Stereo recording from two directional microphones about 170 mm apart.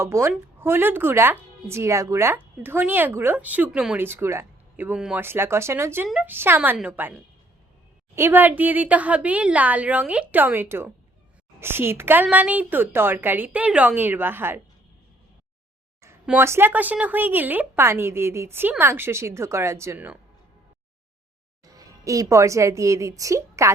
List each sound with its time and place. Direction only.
0.0 s speech: 15° right (ahead or behind)
16.2 s speech: 10° right (ahead or behind)
21.6 s speech: 20° right (ahead or behind)